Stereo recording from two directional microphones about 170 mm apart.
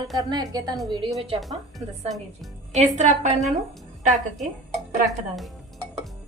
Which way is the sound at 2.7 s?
40° right (ahead or behind).